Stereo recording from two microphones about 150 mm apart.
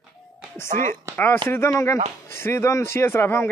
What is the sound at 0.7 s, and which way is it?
Speech, 60° right (ahead or behind).